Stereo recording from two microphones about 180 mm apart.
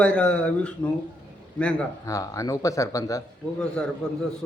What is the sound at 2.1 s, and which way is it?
Speech, 20° left (ahead or behind).